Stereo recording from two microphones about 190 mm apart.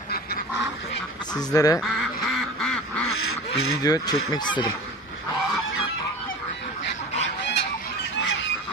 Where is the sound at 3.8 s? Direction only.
20° left (ahead or behind).